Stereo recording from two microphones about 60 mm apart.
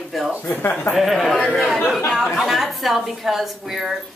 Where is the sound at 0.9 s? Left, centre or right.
Centre.